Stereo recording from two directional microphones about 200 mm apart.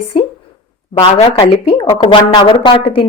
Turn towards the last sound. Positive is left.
turn(degrees=25)  # may be behind; listen again after turning